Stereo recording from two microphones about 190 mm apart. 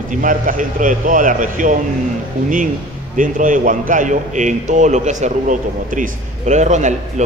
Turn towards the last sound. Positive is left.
turn(degrees=-40)  # may be behind; listen again after turning